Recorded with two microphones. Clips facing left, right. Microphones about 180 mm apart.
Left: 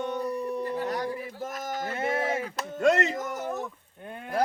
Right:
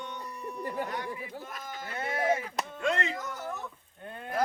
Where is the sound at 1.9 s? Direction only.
25° left (ahead or behind).